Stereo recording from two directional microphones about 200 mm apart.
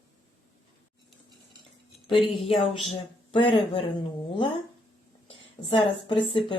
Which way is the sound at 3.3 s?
25° left (ahead or behind).